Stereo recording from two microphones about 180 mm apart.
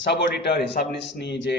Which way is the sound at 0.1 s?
70° left (ahead or behind).